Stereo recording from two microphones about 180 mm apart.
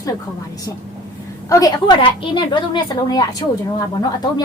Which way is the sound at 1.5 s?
20° left (ahead or behind).